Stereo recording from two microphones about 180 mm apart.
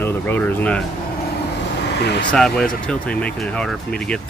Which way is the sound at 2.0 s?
65° left (ahead or behind).